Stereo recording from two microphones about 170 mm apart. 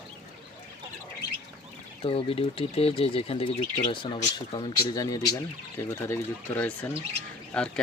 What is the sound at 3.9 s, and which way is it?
Speech, 30° left (ahead or behind).